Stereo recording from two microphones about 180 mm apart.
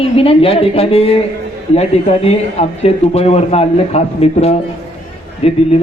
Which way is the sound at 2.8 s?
35° left (ahead or behind).